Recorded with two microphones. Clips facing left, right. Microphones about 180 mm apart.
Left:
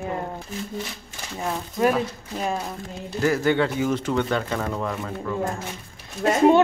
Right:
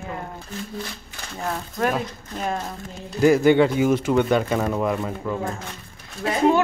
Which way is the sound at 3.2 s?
15° right (ahead or behind).